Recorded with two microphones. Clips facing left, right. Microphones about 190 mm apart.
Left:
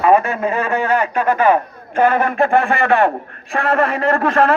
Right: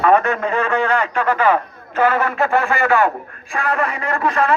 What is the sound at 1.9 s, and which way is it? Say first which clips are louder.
Speech: left 2 dB; 50° left (ahead or behind).